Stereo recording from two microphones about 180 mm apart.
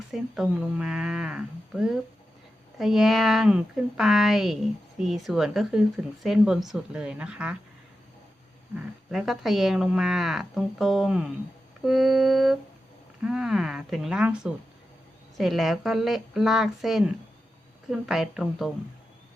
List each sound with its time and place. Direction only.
0.1 s speech: centre (ahead or behind)
9.1 s speech: centre (ahead or behind)